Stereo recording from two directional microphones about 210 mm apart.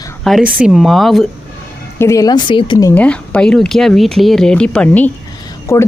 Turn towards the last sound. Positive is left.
turn(degrees=15)  # may be behind; listen again after turning